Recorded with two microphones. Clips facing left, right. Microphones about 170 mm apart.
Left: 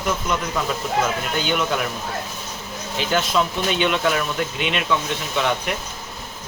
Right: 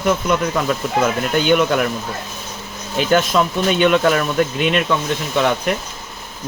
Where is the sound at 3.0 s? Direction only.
50° right (ahead or behind).